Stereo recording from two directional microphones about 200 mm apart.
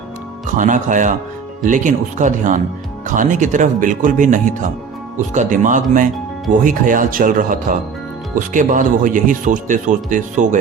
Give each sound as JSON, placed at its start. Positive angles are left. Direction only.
{"t": 0.5, "sound": "speech", "side_deg": -40}